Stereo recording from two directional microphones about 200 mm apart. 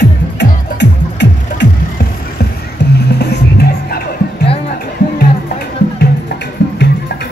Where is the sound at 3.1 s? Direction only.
55° left (ahead or behind).